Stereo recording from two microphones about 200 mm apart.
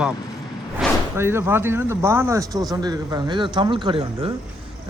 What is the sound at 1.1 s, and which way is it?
Speech, 10° right (ahead or behind).